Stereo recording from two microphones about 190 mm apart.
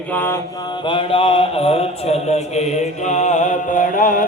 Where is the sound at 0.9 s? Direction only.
30° left (ahead or behind).